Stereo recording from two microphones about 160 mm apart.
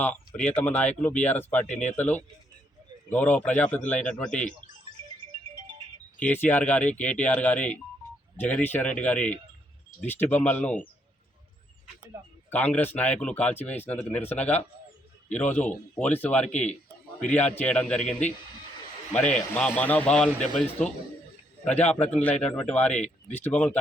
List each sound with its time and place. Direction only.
0.3 s speech: 5° left (ahead or behind)
4.3 s speech: 50° left (ahead or behind)
6.1 s speech: 10° left (ahead or behind)
12.5 s speech: 10° left (ahead or behind)
19.5 s speech: 10° left (ahead or behind)